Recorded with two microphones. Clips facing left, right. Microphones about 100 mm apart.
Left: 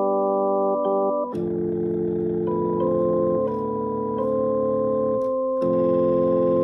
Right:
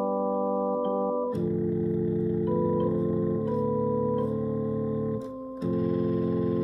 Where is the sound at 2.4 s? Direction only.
50° left (ahead or behind); by 3.1 s 35° left (ahead or behind).